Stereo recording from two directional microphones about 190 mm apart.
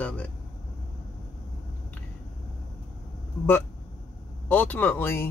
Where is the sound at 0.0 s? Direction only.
5° left (ahead or behind).